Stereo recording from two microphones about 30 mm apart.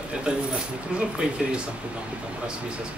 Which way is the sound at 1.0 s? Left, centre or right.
Right.